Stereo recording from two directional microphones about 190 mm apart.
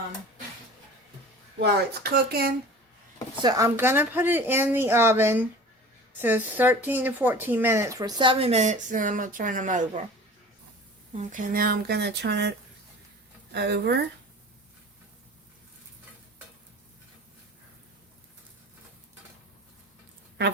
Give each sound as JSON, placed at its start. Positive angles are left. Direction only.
{"t": 1.5, "sound": "speech", "side_deg": -60}
{"t": 3.4, "sound": "speech", "side_deg": -15}
{"t": 11.1, "sound": "speech", "side_deg": -40}